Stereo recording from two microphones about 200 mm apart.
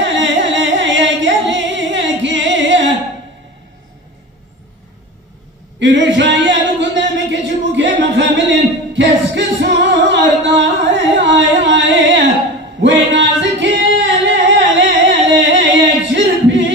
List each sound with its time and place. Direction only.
0.0 s singing: 65° right (ahead or behind)
5.8 s a sound: 65° right (ahead or behind)
12.8 s singing: 65° right (ahead or behind)